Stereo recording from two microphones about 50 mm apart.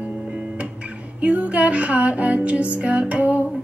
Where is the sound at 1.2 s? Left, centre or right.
Right.